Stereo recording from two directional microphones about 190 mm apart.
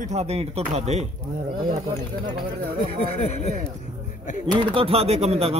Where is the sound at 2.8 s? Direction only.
35° left (ahead or behind).